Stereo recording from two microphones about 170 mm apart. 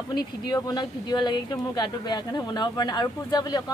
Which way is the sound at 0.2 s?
25° left (ahead or behind).